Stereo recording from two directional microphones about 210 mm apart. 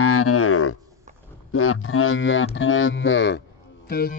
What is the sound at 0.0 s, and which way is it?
Cattle, 90° left.